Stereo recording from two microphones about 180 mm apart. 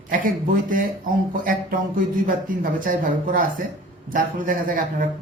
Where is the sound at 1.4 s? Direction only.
50° right (ahead or behind).